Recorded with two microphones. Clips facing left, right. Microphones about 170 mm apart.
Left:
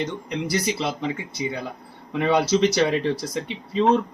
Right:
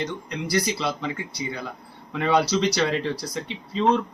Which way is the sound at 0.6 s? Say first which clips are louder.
Left 2 dB; 20° left (ahead or behind).